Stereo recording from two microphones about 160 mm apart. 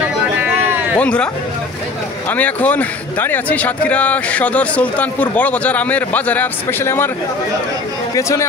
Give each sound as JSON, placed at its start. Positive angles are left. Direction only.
{"t": 0.9, "sound": "a man's voice", "side_deg": 5}
{"t": 8.1, "sound": "a man's voice", "side_deg": 20}